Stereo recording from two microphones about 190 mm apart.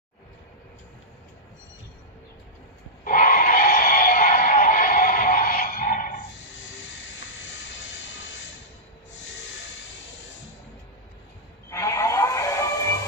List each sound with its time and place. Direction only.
3.1 s music: 45° left (ahead or behind)
11.7 s music: 15° left (ahead or behind)